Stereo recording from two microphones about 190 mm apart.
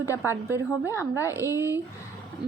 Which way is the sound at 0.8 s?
10° right (ahead or behind).